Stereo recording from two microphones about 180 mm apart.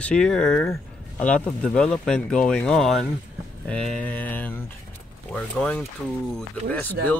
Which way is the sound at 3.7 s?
5° left (ahead or behind).